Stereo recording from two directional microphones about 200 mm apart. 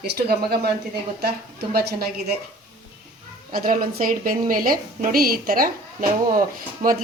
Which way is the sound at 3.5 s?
45° right (ahead or behind).